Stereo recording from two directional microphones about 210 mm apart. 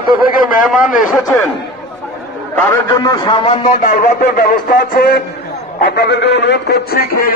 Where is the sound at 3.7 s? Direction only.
40° left (ahead or behind).